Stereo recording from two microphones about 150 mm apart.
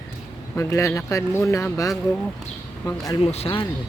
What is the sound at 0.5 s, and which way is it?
Speech, 20° left (ahead or behind).